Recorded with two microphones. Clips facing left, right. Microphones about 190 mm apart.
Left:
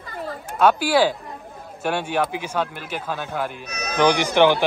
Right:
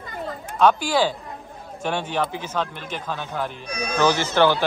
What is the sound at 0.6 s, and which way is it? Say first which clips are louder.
Speech: left 1 dB; 10° left (ahead or behind).